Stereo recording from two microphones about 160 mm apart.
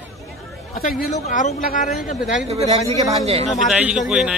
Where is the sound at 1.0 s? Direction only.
50° left (ahead or behind).